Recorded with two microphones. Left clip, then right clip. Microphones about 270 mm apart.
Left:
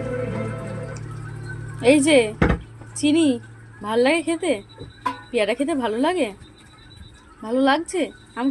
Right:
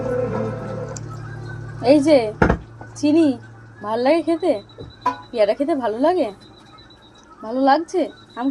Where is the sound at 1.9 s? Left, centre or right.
Left.